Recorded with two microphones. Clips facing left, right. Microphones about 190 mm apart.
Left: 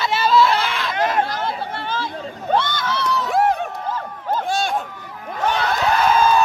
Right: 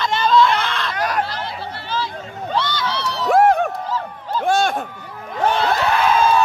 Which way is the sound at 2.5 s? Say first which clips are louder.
Left 2 dB; 50° left (ahead or behind).